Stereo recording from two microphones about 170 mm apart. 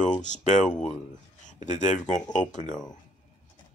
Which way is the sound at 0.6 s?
5° left (ahead or behind).